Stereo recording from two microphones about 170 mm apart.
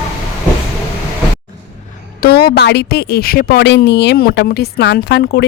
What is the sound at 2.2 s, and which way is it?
A woman's voice, 65° left (ahead or behind).